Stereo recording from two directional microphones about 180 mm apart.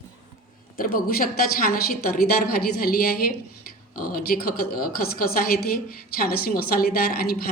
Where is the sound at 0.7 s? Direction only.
55° left (ahead or behind).